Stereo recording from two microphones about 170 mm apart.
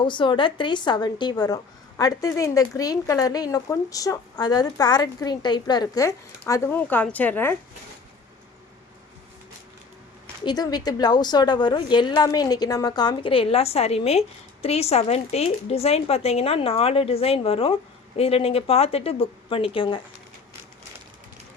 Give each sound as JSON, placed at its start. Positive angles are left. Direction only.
{"t": 0.0, "sound": "a woman's voice", "side_deg": 30}
{"t": 10.4, "sound": "a woman's voice", "side_deg": 25}